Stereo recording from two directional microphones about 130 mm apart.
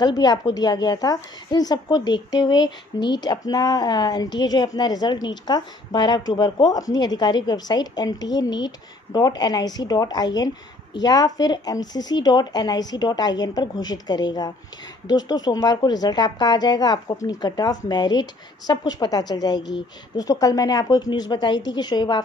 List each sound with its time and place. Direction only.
0.0 s speech: 30° left (ahead or behind)